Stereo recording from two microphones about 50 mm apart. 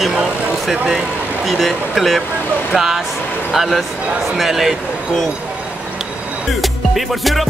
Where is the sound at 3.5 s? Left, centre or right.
Centre.